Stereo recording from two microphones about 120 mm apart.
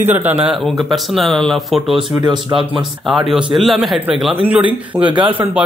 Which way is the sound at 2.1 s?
30° right (ahead or behind).